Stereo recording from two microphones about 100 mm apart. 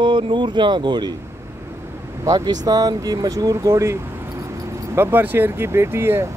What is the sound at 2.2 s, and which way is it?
Speech, 45° right (ahead or behind).